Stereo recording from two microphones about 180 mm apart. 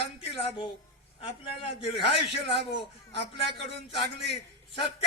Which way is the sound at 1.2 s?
30° left (ahead or behind).